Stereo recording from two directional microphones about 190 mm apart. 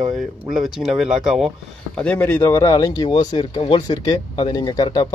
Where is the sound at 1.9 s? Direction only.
10° left (ahead or behind).